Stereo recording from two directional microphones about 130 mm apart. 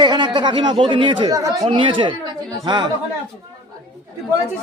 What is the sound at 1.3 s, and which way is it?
Speech, 30° right (ahead or behind).